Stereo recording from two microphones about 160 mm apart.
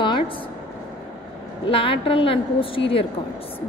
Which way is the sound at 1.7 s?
35° left (ahead or behind).